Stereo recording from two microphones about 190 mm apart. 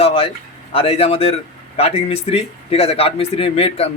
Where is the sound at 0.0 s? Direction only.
30° left (ahead or behind).